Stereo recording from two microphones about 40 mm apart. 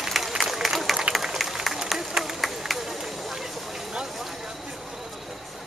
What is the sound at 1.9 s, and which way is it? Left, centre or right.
Run, centre.